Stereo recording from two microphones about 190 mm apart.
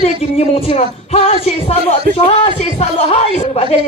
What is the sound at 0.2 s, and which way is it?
A man's voice, 30° left (ahead or behind).